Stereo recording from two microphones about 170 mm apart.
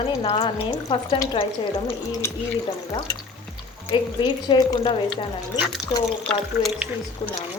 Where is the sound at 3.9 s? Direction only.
25° left (ahead or behind).